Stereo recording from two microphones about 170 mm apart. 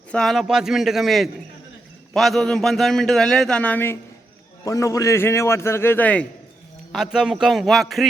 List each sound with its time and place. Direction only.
0.1 s a man's voice: centre (ahead or behind)
6.9 s a man's voice: centre (ahead or behind)